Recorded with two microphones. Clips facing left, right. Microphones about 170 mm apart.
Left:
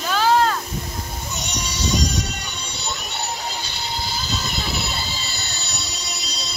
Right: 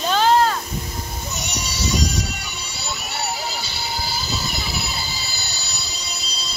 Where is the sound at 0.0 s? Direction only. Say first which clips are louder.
Right 2 dB; 20° right (ahead or behind).